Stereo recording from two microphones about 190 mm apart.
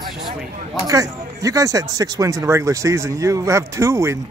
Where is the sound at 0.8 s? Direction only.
20° right (ahead or behind).